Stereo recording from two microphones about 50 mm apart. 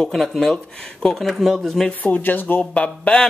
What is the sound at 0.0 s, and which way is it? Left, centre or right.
Speech, centre.